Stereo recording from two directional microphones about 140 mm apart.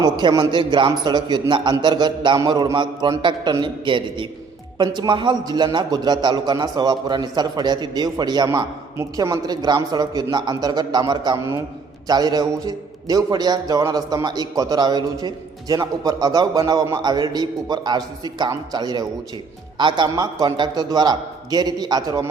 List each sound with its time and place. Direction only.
0.0 s a man's voice: 30° right (ahead or behind)